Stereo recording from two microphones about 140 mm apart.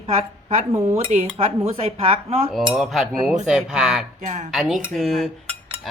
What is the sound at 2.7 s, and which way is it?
Cutlery, centre (ahead or behind).